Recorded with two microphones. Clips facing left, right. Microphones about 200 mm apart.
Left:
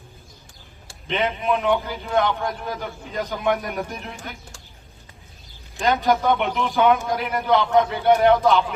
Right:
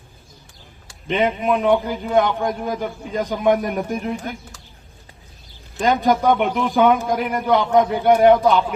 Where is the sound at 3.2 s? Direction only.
45° right (ahead or behind).